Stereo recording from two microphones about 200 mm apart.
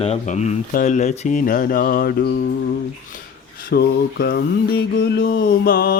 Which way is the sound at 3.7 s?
50° left (ahead or behind).